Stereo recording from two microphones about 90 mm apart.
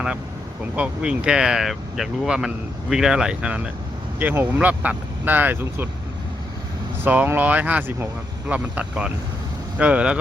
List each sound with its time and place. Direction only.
0.8 s speech: 10° right (ahead or behind)
7.0 s speech: 20° right (ahead or behind)